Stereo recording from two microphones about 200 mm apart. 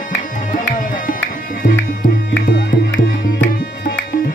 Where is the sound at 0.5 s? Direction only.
40° left (ahead or behind).